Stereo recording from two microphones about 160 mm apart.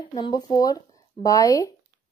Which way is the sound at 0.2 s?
25° left (ahead or behind).